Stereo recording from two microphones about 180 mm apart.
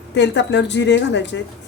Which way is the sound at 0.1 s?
75° left (ahead or behind).